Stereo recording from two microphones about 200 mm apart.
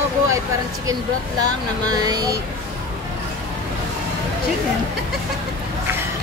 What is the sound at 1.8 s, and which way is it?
Speech, 20° right (ahead or behind).